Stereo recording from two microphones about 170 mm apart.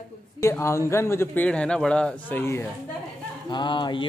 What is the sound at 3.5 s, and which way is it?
Speech, 25° left (ahead or behind).